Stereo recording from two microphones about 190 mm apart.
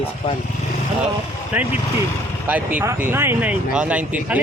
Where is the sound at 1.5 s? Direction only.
10° right (ahead or behind).